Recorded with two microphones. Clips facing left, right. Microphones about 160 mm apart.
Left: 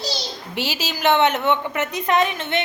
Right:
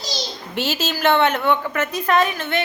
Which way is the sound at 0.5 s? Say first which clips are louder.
Right 3 dB; 15° left (ahead or behind).